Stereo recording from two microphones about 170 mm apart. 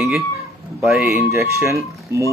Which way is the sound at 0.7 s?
Centre (ahead or behind).